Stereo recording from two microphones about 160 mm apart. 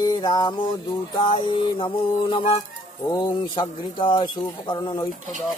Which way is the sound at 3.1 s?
25° left (ahead or behind).